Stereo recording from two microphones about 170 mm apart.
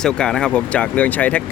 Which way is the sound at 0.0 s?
5° left (ahead or behind).